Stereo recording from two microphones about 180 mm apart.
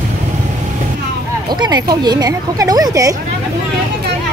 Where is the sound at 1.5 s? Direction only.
25° right (ahead or behind).